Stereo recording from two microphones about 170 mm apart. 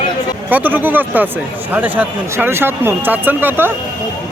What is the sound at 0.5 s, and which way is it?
Speech, 10° right (ahead or behind).